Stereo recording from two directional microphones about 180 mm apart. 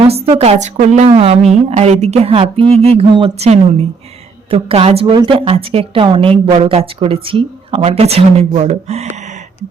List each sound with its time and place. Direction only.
0.0 s a woman's voice: 35° right (ahead or behind)